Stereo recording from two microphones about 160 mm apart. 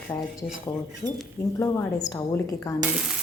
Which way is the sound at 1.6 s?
20° left (ahead or behind).